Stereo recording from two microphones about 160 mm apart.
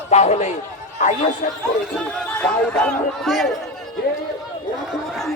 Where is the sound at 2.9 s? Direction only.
Centre (ahead or behind).